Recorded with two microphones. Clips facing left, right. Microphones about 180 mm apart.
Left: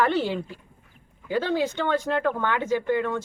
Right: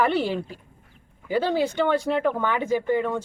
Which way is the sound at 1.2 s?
10° right (ahead or behind).